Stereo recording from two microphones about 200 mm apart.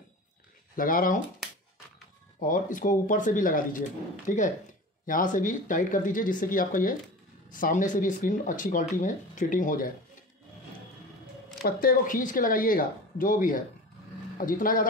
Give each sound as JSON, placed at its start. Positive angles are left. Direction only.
{"t": 0.7, "sound": "speech", "side_deg": 45}
{"t": 1.4, "sound": "dog", "side_deg": 0}
{"t": 2.4, "sound": "speech", "side_deg": 40}
{"t": 11.6, "sound": "speech", "side_deg": 45}